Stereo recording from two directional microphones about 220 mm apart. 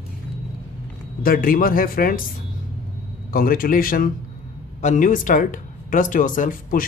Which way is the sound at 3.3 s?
40° left (ahead or behind).